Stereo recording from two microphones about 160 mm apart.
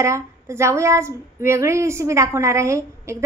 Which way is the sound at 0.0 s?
15° right (ahead or behind).